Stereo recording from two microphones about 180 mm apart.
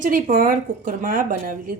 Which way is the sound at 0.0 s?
50° right (ahead or behind).